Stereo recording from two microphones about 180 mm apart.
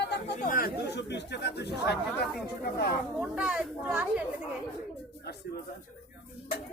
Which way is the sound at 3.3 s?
5° right (ahead or behind).